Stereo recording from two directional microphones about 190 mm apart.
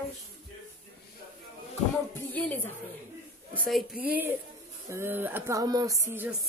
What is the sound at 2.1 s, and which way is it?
Music, 10° left (ahead or behind).